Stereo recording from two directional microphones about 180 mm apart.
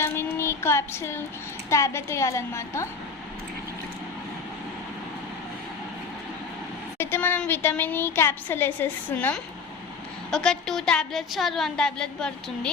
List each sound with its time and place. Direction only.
0.0 s child singing: 15° left (ahead or behind)
1.7 s a woman's voice: 15° left (ahead or behind)
7.0 s a woman's voice: 10° left (ahead or behind)